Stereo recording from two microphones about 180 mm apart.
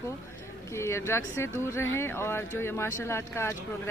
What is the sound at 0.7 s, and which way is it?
Speech, 15° left (ahead or behind).